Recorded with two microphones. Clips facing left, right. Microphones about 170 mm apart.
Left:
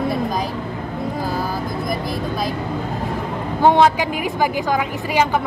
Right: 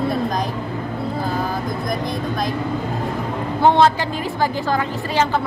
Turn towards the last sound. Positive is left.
turn(degrees=15)  # may be behind; listen again after turning